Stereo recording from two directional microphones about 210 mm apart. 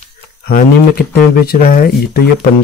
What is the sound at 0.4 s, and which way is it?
Speech, 45° left (ahead or behind).